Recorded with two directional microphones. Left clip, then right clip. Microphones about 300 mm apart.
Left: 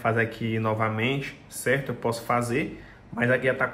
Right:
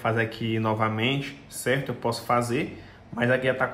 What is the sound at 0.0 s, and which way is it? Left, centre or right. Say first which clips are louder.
Speech: left 1 dB; centre.